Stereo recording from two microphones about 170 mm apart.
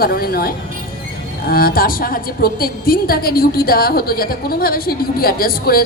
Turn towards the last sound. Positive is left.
turn(degrees=60)  # may be behind; listen again after turning